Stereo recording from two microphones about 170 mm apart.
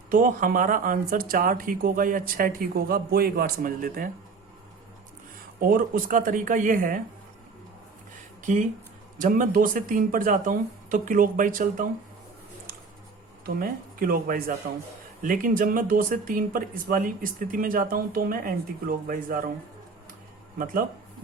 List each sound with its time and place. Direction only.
0.1 s speech: 50° right (ahead or behind)
5.5 s speech: 55° right (ahead or behind)
9.1 s speech: 50° right (ahead or behind)
13.4 s speech: 60° right (ahead or behind)